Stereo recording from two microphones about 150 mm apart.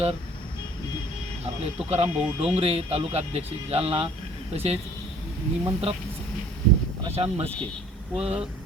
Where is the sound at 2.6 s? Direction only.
40° right (ahead or behind).